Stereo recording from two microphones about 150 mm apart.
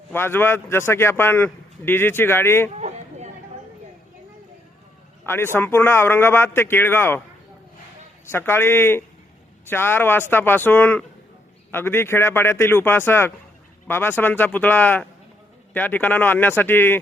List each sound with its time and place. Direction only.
0.1 s a man's voice: 15° left (ahead or behind)
2.7 s a sound: 45° right (ahead or behind)
5.2 s a man's voice: 15° left (ahead or behind)
8.3 s a man's voice: 15° left (ahead or behind)